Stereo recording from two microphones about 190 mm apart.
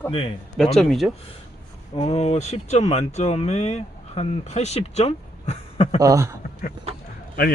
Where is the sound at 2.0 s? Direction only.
35° left (ahead or behind).